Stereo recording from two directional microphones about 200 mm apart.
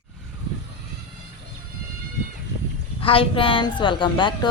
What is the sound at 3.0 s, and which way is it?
A woman's voice, 25° left (ahead or behind).